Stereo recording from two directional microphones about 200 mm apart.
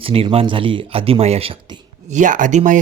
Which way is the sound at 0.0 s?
25° right (ahead or behind).